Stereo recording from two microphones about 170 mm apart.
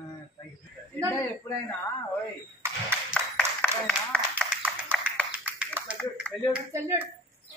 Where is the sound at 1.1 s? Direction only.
15° left (ahead or behind).